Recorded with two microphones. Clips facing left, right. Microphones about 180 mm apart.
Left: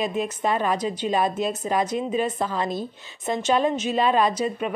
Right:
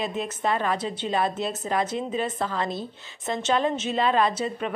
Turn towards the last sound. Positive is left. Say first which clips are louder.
# left 2 dB
turn(degrees=15)  # may be behind; listen again after turning